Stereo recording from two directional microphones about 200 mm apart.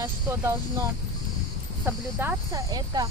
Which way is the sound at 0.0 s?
15° right (ahead or behind).